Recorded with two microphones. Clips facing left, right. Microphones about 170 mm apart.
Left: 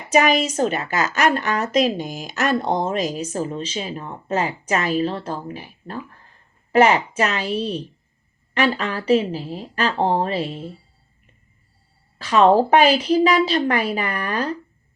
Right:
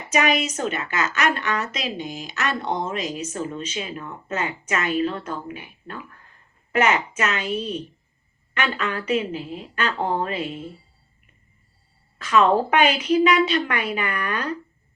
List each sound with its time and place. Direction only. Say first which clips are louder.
0.1 s a woman's voice: left 4 dB; 35° left (ahead or behind)
12.2 s a woman's voice: left 4 dB; 30° left (ahead or behind)